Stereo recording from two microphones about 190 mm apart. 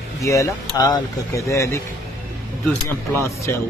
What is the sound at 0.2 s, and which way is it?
Speech, 15° left (ahead or behind).